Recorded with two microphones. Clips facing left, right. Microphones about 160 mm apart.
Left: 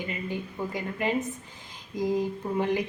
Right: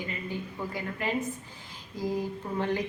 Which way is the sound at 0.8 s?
20° left (ahead or behind).